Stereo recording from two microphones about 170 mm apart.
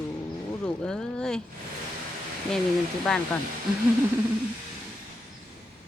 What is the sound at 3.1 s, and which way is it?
Speech, 5° left (ahead or behind).